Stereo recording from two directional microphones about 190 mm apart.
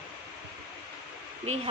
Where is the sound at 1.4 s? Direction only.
35° right (ahead or behind).